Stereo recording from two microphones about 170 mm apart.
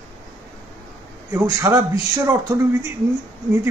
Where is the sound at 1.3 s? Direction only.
15° right (ahead or behind).